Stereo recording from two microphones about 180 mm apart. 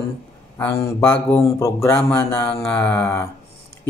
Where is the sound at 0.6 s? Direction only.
15° left (ahead or behind).